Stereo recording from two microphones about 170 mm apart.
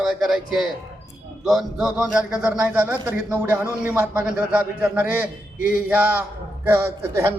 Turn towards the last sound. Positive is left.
turn(degrees=-15)  # may be behind; listen again after turning